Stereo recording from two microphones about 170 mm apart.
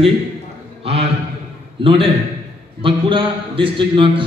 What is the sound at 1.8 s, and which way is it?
A man's voice, 30° right (ahead or behind).